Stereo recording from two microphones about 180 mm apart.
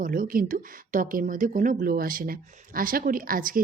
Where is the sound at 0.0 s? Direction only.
50° right (ahead or behind).